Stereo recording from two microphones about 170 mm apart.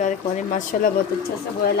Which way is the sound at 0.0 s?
50° left (ahead or behind).